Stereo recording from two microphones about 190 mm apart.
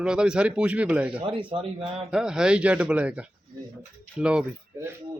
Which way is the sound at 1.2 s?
25° right (ahead or behind).